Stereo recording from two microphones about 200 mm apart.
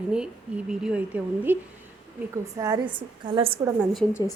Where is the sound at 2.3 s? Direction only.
20° right (ahead or behind).